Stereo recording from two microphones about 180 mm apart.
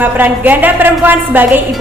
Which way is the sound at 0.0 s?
10° right (ahead or behind).